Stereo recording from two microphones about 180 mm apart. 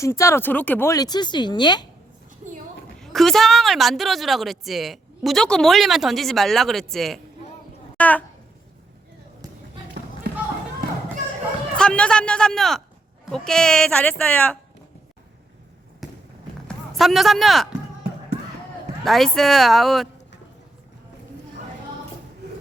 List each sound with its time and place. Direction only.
0.0 s speech: 15° left (ahead or behind)
3.0 s a woman's voice: centre (ahead or behind)
10.3 s run: 65° right (ahead or behind)
11.8 s a woman's voice: 5° left (ahead or behind)
16.0 s basketball bounce: centre (ahead or behind)
16.6 s speech: centre (ahead or behind)
19.0 s a woman's voice: centre (ahead or behind)